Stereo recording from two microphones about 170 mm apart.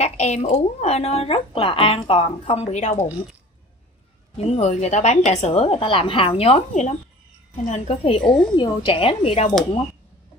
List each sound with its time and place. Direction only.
0.0 s a woman's voice: 40° left (ahead or behind)
4.5 s a woman's voice: 40° left (ahead or behind)
8.2 s a woman's voice: 5° left (ahead or behind)
8.5 s a woman's voice: 30° left (ahead or behind)